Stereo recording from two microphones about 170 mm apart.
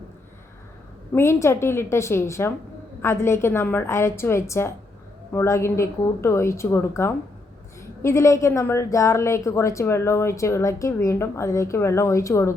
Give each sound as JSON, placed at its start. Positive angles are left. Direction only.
{"t": 1.1, "sound": "a woman's voice", "side_deg": 15}